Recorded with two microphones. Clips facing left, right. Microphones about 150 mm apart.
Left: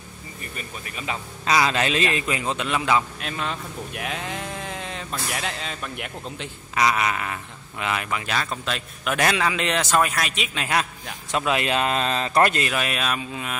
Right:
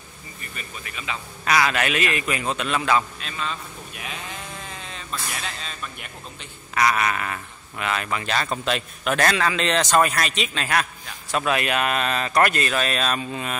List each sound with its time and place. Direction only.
1.4 s speech: 25° left (ahead or behind)
3.2 s speech: 60° left (ahead or behind); by 6.5 s 80° left
6.7 s a man's voice: 20° left (ahead or behind); by 9.1 s centre (ahead or behind)
9.1 s a man's voice: 15° left (ahead or behind)